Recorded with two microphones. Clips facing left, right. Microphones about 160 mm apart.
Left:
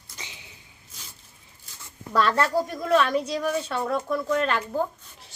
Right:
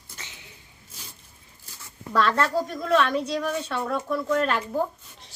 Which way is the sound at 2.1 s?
5° left (ahead or behind).